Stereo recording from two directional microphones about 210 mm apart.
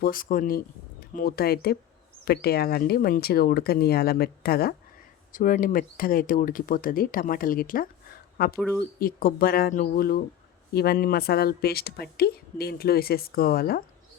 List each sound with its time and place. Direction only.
0.0 s speech: 40° left (ahead or behind)
8.5 s speech: 5° left (ahead or behind)
9.0 s speech: 45° left (ahead or behind)